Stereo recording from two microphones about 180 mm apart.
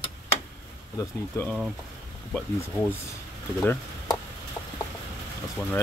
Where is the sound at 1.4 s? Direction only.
15° left (ahead or behind).